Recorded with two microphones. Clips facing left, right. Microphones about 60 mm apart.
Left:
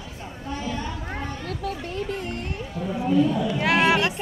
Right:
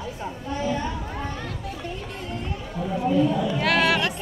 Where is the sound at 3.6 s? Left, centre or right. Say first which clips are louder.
Left 2 dB; centre.